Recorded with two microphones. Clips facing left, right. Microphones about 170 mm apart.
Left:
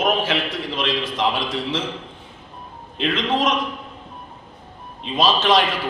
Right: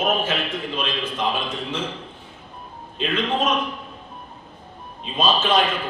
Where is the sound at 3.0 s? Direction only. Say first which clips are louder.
Left 2 dB; 90° left.